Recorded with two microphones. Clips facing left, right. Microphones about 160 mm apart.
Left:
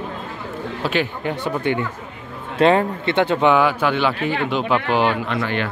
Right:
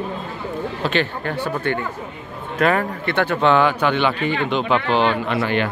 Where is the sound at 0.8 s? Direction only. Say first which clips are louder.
Left 1 dB; 10° left (ahead or behind).